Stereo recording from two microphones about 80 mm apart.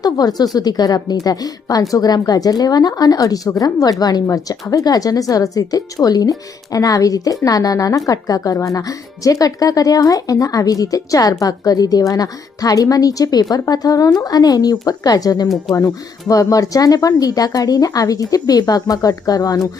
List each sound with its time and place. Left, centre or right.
0.0 s a woman's voice: left